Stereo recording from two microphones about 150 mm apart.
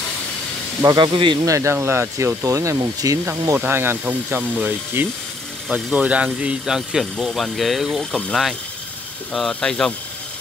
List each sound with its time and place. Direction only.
0.8 s speech: 30° right (ahead or behind)
1.4 s speech: 20° right (ahead or behind); by 9.9 s 5° left (ahead or behind)